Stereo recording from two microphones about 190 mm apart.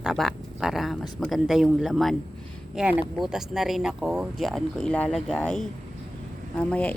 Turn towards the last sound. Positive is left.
turn(degrees=5)  # may be behind; listen again after turning